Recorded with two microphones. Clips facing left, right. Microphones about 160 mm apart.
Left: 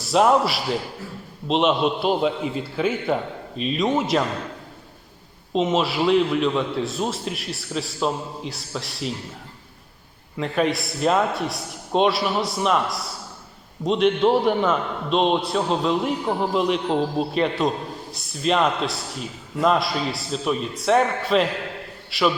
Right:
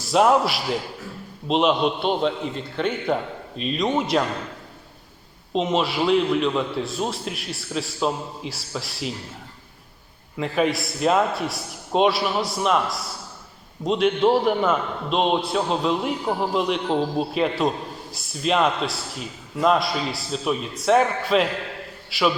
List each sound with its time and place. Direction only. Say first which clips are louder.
0.0 s a man's voice: even; centre (ahead or behind)
5.5 s a man's voice: left 1 dB; centre (ahead or behind)
10.3 s a man's voice: even; centre (ahead or behind)